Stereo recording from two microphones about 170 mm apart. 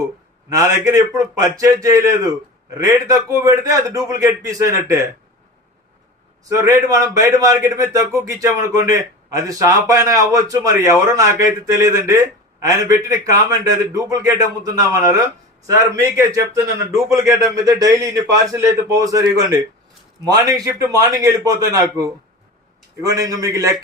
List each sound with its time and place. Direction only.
0.5 s a man's voice: 20° right (ahead or behind)
6.4 s a man's voice: 20° right (ahead or behind)
23.0 s a man's voice: 20° right (ahead or behind)